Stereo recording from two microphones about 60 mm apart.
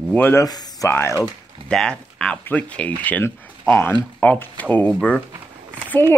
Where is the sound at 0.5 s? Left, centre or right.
Left.